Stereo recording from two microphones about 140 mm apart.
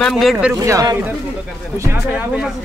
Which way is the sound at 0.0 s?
Centre (ahead or behind).